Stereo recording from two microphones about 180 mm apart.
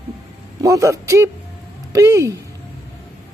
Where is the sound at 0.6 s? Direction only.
15° right (ahead or behind).